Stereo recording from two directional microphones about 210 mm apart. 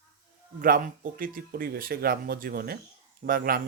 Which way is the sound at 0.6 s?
40° right (ahead or behind).